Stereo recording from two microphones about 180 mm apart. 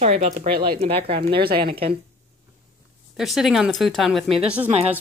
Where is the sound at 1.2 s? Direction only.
60° right (ahead or behind).